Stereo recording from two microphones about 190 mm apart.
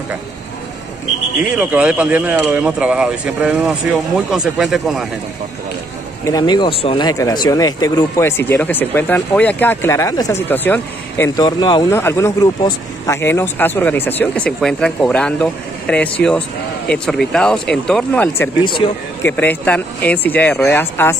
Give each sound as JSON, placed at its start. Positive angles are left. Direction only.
{"t": 1.4, "sound": "speech", "side_deg": -5}
{"t": 6.2, "sound": "speech", "side_deg": 20}
{"t": 18.6, "sound": "speech", "side_deg": 25}
{"t": 19.2, "sound": "speech", "side_deg": 10}